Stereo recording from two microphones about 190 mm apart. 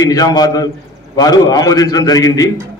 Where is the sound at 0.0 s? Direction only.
20° left (ahead or behind).